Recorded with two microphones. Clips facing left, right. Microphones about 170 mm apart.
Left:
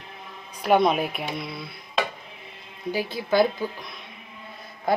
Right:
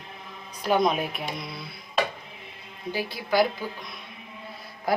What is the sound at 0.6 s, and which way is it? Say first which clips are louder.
Speech: left 3 dB; centre (ahead or behind).